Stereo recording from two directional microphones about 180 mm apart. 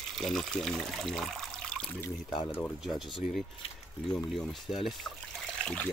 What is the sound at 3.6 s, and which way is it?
Speech, 30° left (ahead or behind).